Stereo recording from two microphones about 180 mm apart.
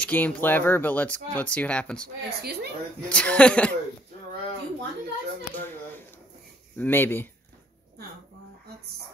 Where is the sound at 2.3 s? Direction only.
65° right (ahead or behind).